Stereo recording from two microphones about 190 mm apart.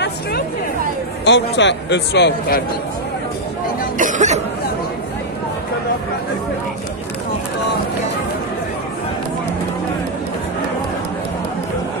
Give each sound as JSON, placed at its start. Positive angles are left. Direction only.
{"t": 1.2, "sound": "a man's voice", "side_deg": 65}
{"t": 4.0, "sound": "cough", "side_deg": -40}